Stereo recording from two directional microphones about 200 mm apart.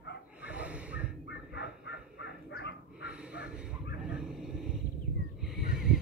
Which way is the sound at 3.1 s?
5° right (ahead or behind).